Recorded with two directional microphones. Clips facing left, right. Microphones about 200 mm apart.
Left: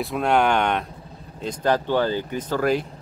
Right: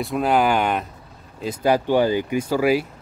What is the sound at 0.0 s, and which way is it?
Speech, centre (ahead or behind).